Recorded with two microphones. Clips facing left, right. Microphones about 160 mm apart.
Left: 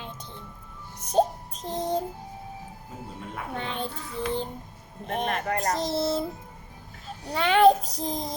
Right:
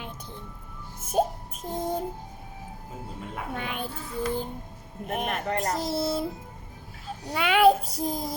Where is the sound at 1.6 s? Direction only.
5° right (ahead or behind).